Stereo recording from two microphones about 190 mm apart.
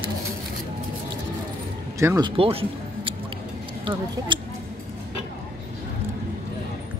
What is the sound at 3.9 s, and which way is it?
Speech, 25° right (ahead or behind).